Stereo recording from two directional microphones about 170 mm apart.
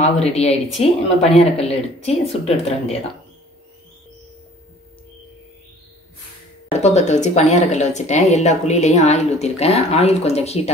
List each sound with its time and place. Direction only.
0.0 s speech: 40° left (ahead or behind)
6.7 s speech: 40° left (ahead or behind)